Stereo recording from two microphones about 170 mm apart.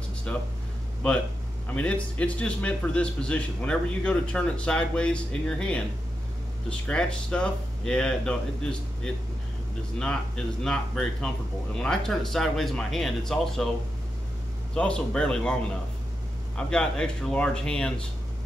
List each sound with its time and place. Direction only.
0.3 s a man's voice: 5° left (ahead or behind)
14.7 s speech: 5° left (ahead or behind)
16.5 s speech: 5° left (ahead or behind)